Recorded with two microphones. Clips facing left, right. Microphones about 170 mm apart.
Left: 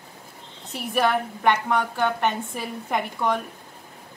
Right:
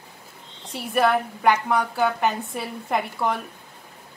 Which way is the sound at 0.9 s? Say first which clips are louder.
Right 2 dB; centre (ahead or behind).